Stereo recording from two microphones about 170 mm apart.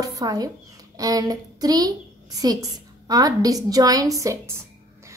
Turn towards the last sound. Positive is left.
turn(degrees=-20)  # may be behind; listen again after turning